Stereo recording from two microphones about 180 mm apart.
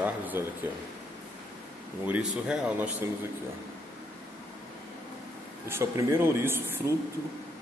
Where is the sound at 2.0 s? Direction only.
5° right (ahead or behind).